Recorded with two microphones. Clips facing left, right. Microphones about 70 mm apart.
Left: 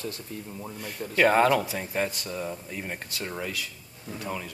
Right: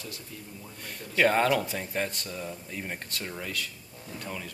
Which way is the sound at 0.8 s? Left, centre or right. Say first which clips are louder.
Left 2 dB; centre.